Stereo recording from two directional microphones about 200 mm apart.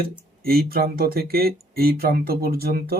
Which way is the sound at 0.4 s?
50° right (ahead or behind).